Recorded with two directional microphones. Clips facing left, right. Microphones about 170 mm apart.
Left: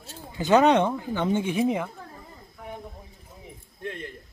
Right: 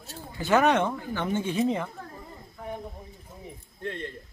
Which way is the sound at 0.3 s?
20° left (ahead or behind).